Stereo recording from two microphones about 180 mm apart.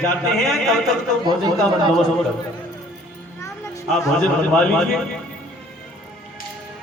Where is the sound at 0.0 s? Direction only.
Centre (ahead or behind).